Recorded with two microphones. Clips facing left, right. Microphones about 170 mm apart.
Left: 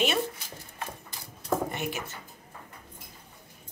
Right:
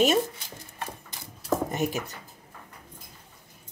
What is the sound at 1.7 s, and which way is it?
Speech, 40° right (ahead or behind).